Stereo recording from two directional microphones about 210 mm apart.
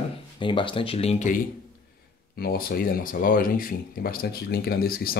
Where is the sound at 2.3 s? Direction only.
45° left (ahead or behind).